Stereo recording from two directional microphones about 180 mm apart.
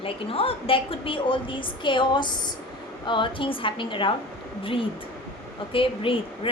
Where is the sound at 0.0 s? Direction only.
30° left (ahead or behind).